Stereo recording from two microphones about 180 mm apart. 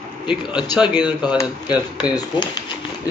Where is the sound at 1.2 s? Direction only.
25° left (ahead or behind).